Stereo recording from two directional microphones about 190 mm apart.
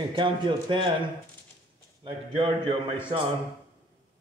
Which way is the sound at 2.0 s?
25° right (ahead or behind).